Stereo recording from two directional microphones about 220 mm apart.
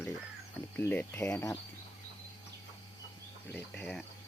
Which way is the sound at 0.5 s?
5° left (ahead or behind).